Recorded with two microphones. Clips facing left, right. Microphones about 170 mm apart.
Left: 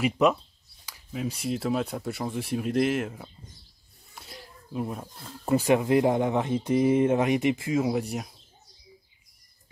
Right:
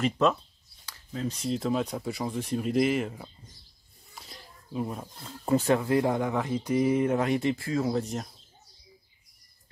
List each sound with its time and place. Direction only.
0.0 s speech: 15° left (ahead or behind)
5.6 s speech: 15° left (ahead or behind)